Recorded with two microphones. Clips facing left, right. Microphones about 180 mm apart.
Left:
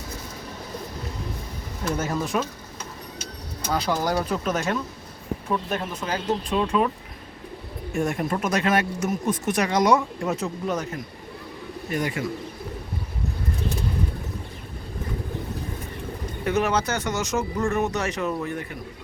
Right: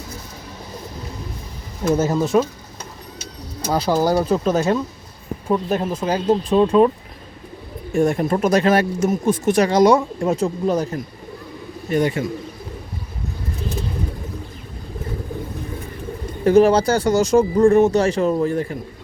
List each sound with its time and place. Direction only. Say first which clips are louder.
2.0 s speech: right 6 dB; 25° right (ahead or behind)
3.7 s speech: right 6 dB; 30° right (ahead or behind)
7.9 s speech: right 7 dB; 35° right (ahead or behind)
16.4 s speech: right 10 dB; 30° right (ahead or behind)